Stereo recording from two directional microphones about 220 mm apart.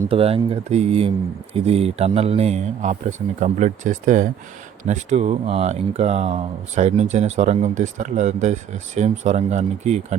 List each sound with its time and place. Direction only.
0.1 s speech: 25° right (ahead or behind)